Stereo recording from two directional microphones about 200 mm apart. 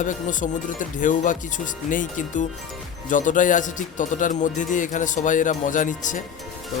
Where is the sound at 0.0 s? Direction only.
40° left (ahead or behind).